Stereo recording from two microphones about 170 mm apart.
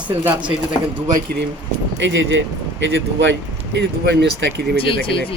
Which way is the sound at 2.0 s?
90° right.